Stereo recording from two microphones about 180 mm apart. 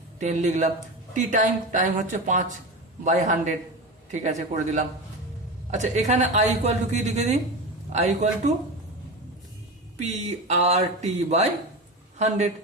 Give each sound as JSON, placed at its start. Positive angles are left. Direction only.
{"t": 0.2, "sound": "speech", "side_deg": -40}
{"t": 10.0, "sound": "speech", "side_deg": -40}